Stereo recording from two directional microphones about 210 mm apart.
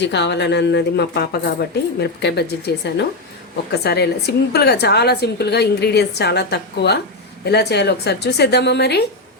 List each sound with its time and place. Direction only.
0.0 s a woman's voice: 55° left (ahead or behind)